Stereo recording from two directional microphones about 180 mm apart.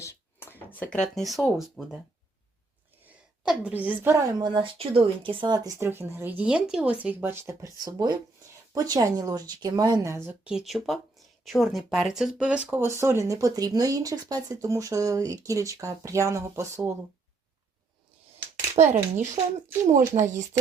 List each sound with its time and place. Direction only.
0.0 s a sound: 15° left (ahead or behind); by 2.0 s 5° right (ahead or behind)
3.4 s speech: 5° right (ahead or behind)
4.4 s speech: 25° right (ahead or behind)
18.8 s speech: 35° right (ahead or behind)